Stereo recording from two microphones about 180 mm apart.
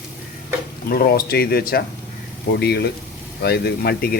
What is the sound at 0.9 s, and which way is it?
Speech, 55° left (ahead or behind).